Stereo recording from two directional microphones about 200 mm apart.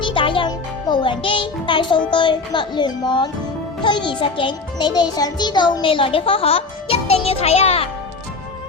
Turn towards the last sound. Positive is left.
turn(degrees=30)  # may be behind; listen again after turning